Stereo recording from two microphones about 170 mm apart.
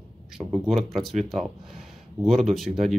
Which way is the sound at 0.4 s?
Centre (ahead or behind).